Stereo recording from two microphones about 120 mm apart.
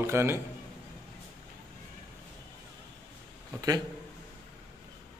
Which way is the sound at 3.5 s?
30° right (ahead or behind).